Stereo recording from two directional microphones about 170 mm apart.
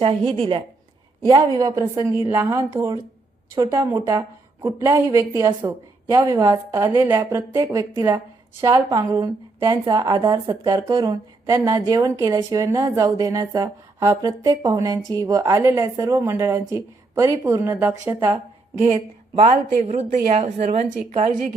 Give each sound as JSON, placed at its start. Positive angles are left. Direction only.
{"t": 0.0, "sound": "a woman's voice", "side_deg": -35}
{"t": 1.3, "sound": "a woman's voice", "side_deg": -20}
{"t": 19.5, "sound": "a woman's voice", "side_deg": -40}